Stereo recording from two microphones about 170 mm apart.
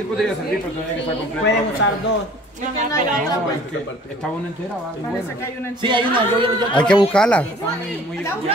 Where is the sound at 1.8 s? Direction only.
90° left.